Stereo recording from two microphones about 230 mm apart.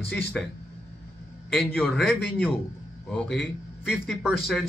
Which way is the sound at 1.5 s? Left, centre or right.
Centre.